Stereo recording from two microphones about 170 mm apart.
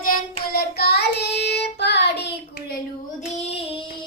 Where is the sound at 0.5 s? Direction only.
70° left (ahead or behind).